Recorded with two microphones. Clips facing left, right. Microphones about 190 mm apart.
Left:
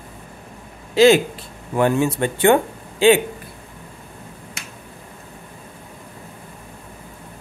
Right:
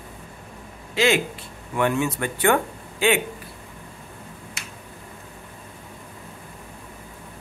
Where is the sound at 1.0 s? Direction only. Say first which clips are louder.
Left 8 dB; 40° left (ahead or behind).